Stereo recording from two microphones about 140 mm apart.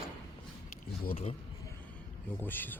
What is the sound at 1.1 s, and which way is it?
Speech, 45° left (ahead or behind).